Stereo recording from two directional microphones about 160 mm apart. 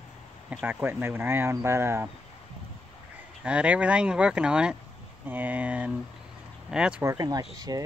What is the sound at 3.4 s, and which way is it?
Speech, 5° right (ahead or behind).